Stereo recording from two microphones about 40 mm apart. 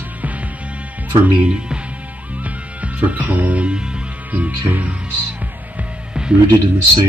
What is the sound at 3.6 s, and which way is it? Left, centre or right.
Music, right.